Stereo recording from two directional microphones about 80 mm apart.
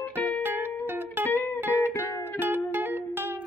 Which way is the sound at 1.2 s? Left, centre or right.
Left.